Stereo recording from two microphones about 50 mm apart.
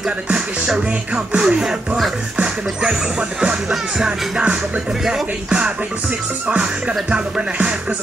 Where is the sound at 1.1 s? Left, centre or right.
Right.